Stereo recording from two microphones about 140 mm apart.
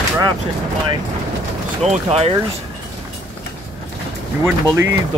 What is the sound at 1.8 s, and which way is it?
Speech, 50° right (ahead or behind).